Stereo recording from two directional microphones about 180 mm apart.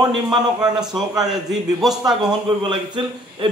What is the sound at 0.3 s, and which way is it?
Speech, 20° right (ahead or behind).